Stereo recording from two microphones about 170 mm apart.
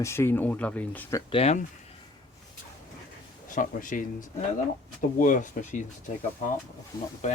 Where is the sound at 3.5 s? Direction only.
50° left (ahead or behind).